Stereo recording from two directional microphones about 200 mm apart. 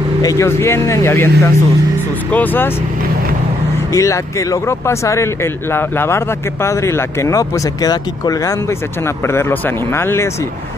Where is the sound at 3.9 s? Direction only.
15° left (ahead or behind).